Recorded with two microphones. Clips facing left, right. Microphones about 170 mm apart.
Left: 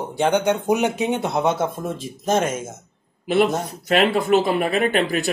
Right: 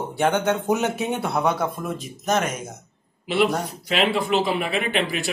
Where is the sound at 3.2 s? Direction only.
45° left (ahead or behind).